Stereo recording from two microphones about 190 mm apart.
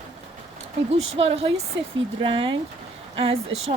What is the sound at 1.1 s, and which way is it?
Speech, 30° right (ahead or behind).